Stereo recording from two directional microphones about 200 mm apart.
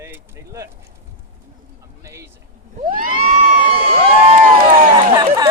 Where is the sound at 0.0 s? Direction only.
15° right (ahead or behind).